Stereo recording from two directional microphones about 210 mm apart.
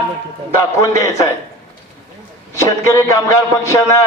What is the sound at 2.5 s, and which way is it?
A man's voice, 15° left (ahead or behind).